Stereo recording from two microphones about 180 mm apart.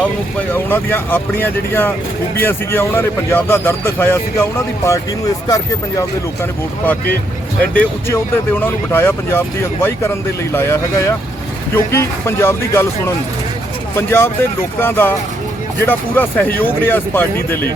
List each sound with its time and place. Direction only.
0.0 s a man's voice: 10° left (ahead or behind)
10.5 s a man's voice: 15° left (ahead or behind)